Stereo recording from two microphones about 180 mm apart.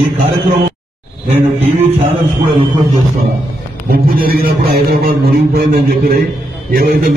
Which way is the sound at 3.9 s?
55° right (ahead or behind).